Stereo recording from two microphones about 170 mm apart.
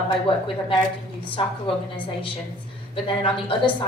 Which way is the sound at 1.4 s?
35° left (ahead or behind).